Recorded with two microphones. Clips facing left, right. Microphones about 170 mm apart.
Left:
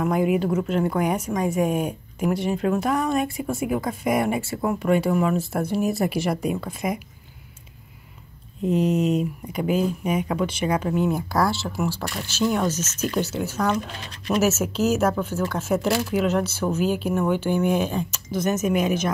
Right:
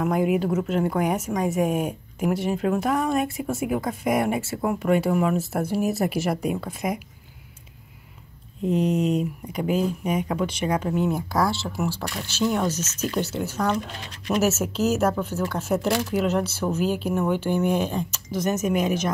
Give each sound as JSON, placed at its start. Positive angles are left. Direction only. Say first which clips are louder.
{"t": 0.0, "sound": "a woman's voice", "louder": "left 1 dB", "side_deg": 0}
{"t": 8.6, "sound": "a woman's voice", "louder": "left 1 dB", "side_deg": 5}
{"t": 14.4, "sound": "a woman's voice", "louder": "left 1 dB", "side_deg": 0}